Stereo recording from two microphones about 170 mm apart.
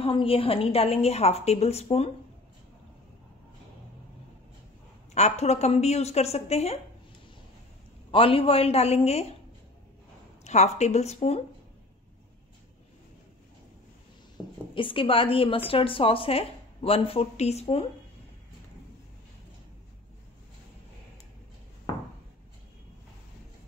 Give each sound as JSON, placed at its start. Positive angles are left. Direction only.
{"t": 0.0, "sound": "a woman's voice", "side_deg": 30}
{"t": 5.1, "sound": "a woman's voice", "side_deg": 40}
{"t": 8.1, "sound": "a woman's voice", "side_deg": 30}
{"t": 10.4, "sound": "a woman's voice", "side_deg": 40}
{"t": 14.3, "sound": "a woman's voice", "side_deg": 30}